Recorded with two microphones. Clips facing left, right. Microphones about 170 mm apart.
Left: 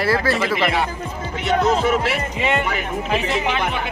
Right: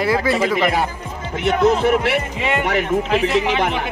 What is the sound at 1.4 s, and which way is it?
Speech, 60° right (ahead or behind).